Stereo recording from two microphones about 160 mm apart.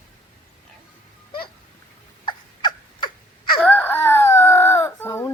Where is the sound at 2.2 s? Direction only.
30° left (ahead or behind).